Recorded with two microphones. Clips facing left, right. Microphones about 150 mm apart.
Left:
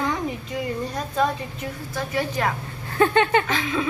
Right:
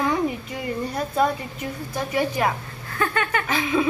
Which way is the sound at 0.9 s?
10° right (ahead or behind).